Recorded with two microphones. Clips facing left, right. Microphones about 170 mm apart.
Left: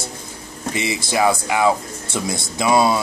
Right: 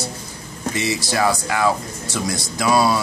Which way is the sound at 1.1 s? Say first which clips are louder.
Left 3 dB; 15° left (ahead or behind).